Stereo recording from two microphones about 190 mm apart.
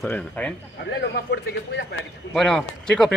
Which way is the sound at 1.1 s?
60° left (ahead or behind).